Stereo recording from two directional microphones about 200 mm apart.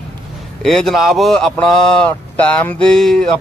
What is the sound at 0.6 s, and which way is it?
A man's voice, centre (ahead or behind).